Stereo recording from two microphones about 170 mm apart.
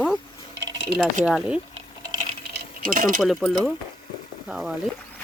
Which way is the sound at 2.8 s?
50° right (ahead or behind).